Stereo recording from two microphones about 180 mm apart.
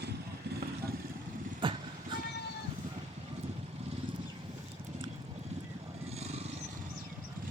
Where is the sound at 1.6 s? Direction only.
25° right (ahead or behind).